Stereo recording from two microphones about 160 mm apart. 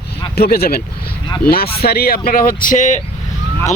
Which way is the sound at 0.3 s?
75° left (ahead or behind).